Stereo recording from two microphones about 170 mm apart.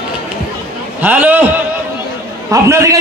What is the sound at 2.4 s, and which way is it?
Speech, 15° right (ahead or behind).